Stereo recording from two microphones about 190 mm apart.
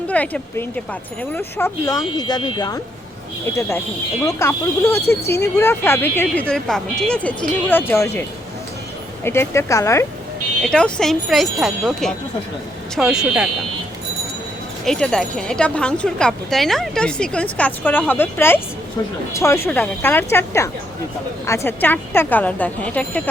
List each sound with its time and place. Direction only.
0.1 s speech: 5° left (ahead or behind)
9.2 s speech: 15° left (ahead or behind)
10.6 s speech: 5° left (ahead or behind)
14.8 s speech: 5° left (ahead or behind)